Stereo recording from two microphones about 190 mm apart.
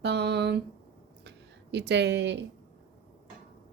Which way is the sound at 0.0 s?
60° right (ahead or behind).